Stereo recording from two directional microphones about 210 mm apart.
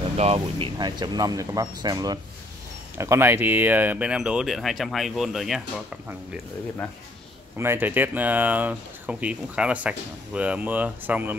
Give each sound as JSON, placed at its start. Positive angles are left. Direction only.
{"t": 0.2, "sound": "speech", "side_deg": -25}
{"t": 7.5, "sound": "speech", "side_deg": -10}